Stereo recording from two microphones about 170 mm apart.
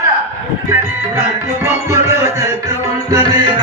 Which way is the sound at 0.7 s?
15° right (ahead or behind).